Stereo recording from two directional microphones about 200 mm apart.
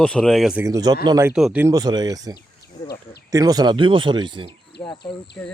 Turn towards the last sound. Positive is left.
turn(degrees=5)  # may be behind; listen again after turning